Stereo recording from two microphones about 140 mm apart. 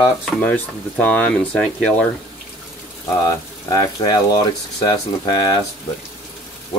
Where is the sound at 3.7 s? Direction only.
25° left (ahead or behind).